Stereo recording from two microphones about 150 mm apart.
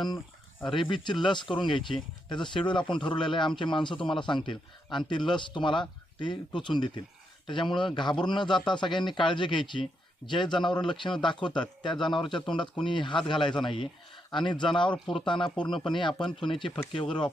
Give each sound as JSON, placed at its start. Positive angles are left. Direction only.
{"t": 0.7, "sound": "speech", "side_deg": 35}